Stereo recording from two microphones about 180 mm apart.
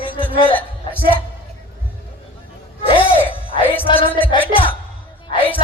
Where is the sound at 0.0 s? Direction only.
30° left (ahead or behind).